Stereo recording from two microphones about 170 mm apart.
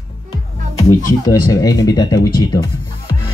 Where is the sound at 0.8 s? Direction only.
20° left (ahead or behind).